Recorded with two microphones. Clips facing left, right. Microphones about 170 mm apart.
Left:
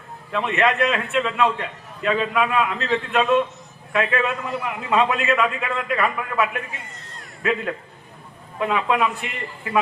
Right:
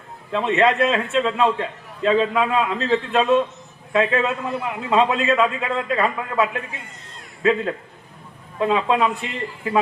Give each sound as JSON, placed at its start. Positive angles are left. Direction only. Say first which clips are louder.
{"t": 0.3, "sound": "a man's voice", "louder": "right 3 dB", "side_deg": -30}
{"t": 8.5, "sound": "a man's voice", "louder": "right 2 dB", "side_deg": -25}